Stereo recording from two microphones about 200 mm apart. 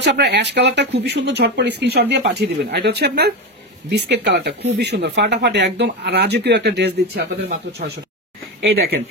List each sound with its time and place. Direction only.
0.0 s speech: 60° right (ahead or behind)